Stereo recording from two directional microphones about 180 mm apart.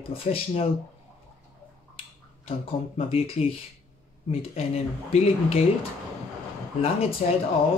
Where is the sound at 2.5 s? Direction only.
35° left (ahead or behind).